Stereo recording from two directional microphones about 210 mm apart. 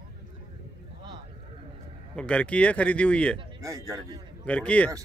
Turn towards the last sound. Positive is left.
turn(degrees=5)  # may be behind; listen again after turning